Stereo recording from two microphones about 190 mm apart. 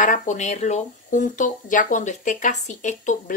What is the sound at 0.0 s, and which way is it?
Speech, 40° left (ahead or behind).